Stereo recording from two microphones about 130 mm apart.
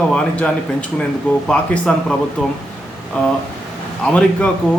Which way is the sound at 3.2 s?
10° left (ahead or behind).